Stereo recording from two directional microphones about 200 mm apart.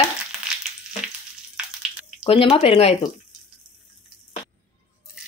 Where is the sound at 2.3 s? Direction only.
30° left (ahead or behind).